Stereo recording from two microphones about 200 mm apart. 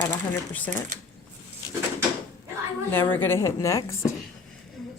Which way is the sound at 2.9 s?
10° left (ahead or behind).